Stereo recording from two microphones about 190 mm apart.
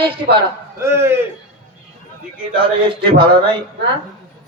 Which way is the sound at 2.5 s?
25° right (ahead or behind).